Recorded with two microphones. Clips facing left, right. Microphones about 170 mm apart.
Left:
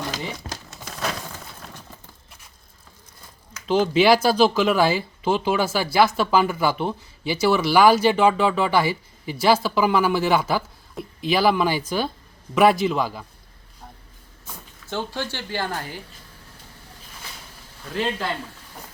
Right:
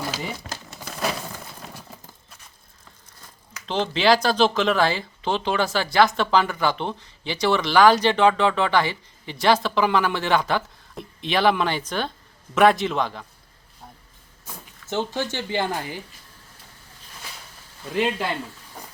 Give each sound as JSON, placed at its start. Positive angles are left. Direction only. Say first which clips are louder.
{"t": 0.1, "sound": "crumpling", "louder": "even", "side_deg": -5}
{"t": 3.7, "sound": "a man's voice", "louder": "left 3 dB", "side_deg": 10}
{"t": 14.8, "sound": "speech", "louder": "right 3 dB", "side_deg": -15}
{"t": 17.9, "sound": "speech", "louder": "right 2 dB", "side_deg": -10}